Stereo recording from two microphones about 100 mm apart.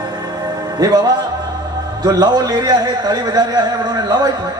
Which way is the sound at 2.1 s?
40° right (ahead or behind).